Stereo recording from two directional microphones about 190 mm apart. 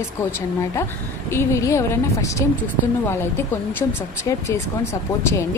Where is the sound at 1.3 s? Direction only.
15° left (ahead or behind).